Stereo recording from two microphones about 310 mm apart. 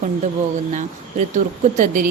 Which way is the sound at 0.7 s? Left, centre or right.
Right.